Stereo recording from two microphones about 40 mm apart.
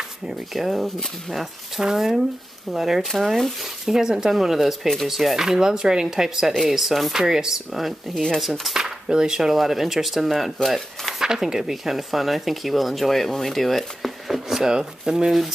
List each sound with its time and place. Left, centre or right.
0.5 s speech: centre
1.8 s speech: centre
3.8 s speech: centre
8.1 s speech: centre
8.4 s speech: centre
8.8 s speech: centre
11.2 s speech: centre
14.6 s speech: centre